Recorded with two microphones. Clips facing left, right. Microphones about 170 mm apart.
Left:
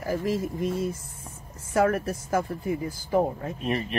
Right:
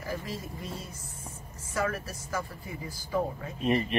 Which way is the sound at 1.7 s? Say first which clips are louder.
Left 9 dB; 60° left (ahead or behind).